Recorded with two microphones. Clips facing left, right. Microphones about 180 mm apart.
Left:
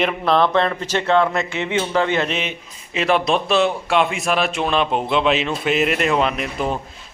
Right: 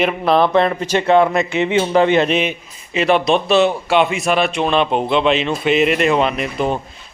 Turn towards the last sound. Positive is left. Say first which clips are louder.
# right 3 dB
turn(degrees=0)  # may be behind; listen again after turning